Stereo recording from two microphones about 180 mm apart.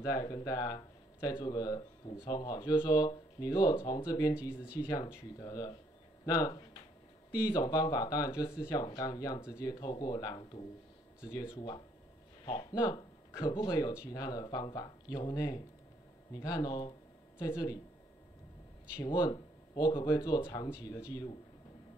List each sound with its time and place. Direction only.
0.0 s speech: 20° left (ahead or behind)
19.0 s speech: 25° left (ahead or behind)